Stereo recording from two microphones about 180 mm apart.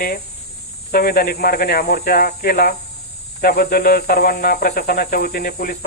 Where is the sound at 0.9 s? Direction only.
55° left (ahead or behind).